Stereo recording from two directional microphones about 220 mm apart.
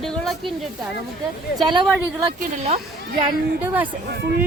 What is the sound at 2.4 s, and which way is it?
Speech, 30° right (ahead or behind).